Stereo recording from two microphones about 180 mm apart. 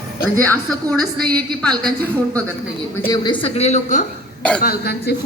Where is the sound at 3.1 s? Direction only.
25° left (ahead or behind); by 4.0 s 40° left (ahead or behind).